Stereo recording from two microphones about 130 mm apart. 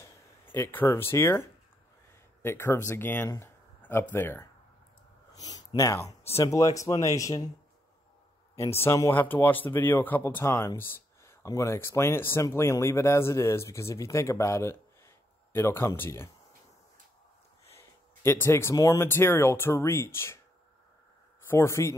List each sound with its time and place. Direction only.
0.0 s speech: 15° left (ahead or behind)
5.3 s speech: 30° left (ahead or behind)
8.7 s speech: 20° left (ahead or behind)
17.7 s speech: 20° left (ahead or behind)
21.5 s speech: 20° left (ahead or behind)